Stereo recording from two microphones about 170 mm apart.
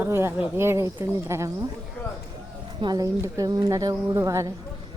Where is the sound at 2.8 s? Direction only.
25° right (ahead or behind).